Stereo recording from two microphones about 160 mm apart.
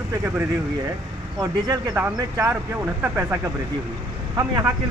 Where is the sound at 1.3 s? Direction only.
25° right (ahead or behind).